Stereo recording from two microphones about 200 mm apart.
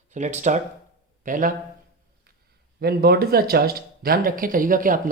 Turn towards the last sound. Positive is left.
turn(degrees=-45)  # may be behind; listen again after turning